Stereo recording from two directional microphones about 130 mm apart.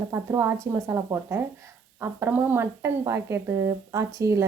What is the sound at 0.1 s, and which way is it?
Speech, 20° right (ahead or behind).